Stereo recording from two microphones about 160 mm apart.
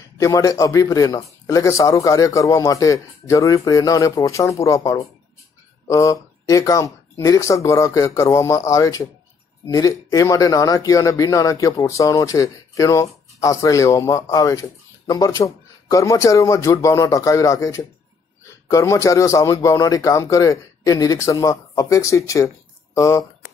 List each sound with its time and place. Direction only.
0.2 s speech: 20° left (ahead or behind)